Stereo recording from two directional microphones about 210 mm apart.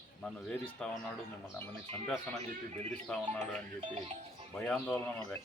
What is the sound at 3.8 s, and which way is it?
Speech, 30° right (ahead or behind).